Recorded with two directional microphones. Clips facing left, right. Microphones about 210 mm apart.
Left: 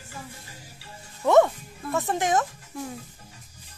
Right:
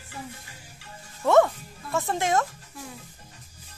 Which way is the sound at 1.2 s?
15° left (ahead or behind).